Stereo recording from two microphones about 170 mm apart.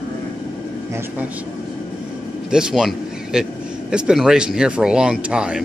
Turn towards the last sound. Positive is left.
turn(degrees=-5)  # may be behind; listen again after turning